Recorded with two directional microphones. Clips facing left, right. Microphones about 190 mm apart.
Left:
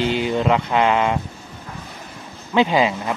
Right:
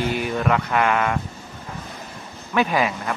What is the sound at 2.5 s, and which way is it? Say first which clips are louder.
Speech: left 4 dB; 20° left (ahead or behind).